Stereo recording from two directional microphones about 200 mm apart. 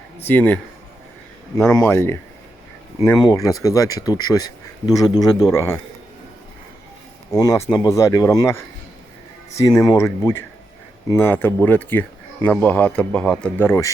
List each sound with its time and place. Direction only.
0.2 s speech: 10° left (ahead or behind)
1.8 s speech: 10° left (ahead or behind)
7.3 s speech: 20° left (ahead or behind)